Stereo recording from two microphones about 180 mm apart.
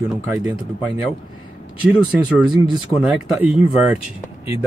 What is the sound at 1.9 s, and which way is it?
Speech, 5° right (ahead or behind).